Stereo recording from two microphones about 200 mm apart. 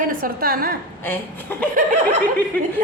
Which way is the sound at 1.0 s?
10° left (ahead or behind).